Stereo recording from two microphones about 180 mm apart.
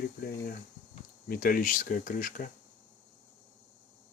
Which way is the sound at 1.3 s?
50° left (ahead or behind).